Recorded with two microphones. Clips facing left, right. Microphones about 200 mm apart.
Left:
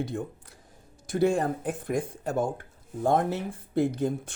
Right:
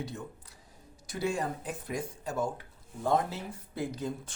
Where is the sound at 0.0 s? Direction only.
50° left (ahead or behind).